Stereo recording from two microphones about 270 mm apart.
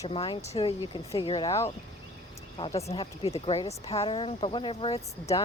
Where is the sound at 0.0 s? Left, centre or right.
Centre.